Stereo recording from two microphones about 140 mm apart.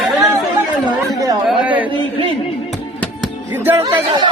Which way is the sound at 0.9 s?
25° right (ahead or behind).